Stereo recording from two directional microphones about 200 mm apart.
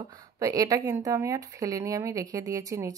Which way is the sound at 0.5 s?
15° right (ahead or behind).